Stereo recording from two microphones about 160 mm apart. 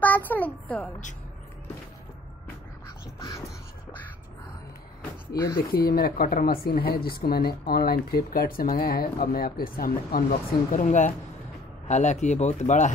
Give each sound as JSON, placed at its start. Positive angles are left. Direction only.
{"t": 0.0, "sound": "a child's voice", "side_deg": 10}
{"t": 3.2, "sound": "a sound", "side_deg": 20}
{"t": 5.6, "sound": "speech", "side_deg": 70}
{"t": 10.7, "sound": "speech", "side_deg": 50}